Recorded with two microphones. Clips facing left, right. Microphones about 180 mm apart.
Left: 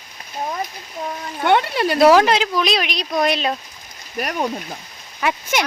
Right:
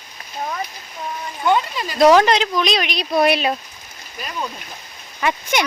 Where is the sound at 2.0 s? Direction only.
5° left (ahead or behind).